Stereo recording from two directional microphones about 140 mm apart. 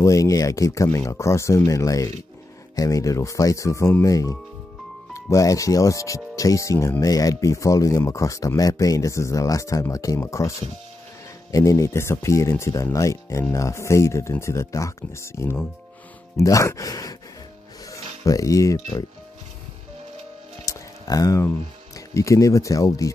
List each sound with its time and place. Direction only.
0.0 s speech: 25° left (ahead or behind)
11.5 s speech: 25° left (ahead or behind)
20.6 s speech: 25° left (ahead or behind)